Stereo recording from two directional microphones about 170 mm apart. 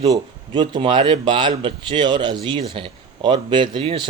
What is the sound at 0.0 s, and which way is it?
Speech, 25° right (ahead or behind).